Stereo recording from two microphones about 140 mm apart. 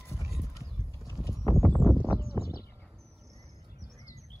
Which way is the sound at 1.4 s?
20° left (ahead or behind).